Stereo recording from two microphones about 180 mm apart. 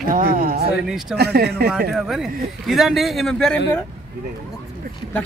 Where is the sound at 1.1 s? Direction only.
65° right (ahead or behind).